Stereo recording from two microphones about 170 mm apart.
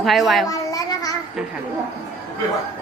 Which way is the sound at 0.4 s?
20° left (ahead or behind).